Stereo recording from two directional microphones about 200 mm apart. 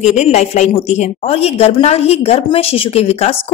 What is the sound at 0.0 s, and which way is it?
A woman's voice, 35° left (ahead or behind).